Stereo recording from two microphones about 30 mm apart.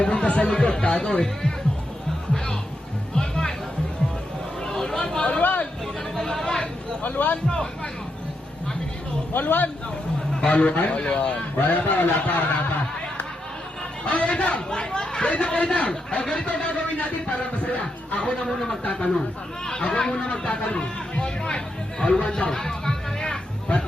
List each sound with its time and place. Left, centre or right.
0.1 s a man's voice: left
3.2 s music: left
4.6 s a sound: left
5.4 s chatter: left
6.4 s chatter: left
7.0 s speech: left
7.4 s speech: left
9.3 s a man's voice: left
10.5 s a man's voice: left
11.5 s speech: left
11.8 s speech: left
14.0 s a man's voice: left
18.4 s a sound: centre
18.9 s a man's voice: left